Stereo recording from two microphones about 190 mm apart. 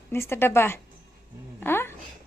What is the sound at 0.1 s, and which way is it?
A woman's voice, 10° left (ahead or behind).